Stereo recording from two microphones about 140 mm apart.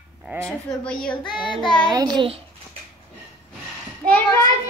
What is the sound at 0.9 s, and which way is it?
Speech, 5° left (ahead or behind).